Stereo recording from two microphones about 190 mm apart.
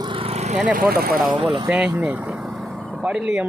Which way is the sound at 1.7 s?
5° right (ahead or behind).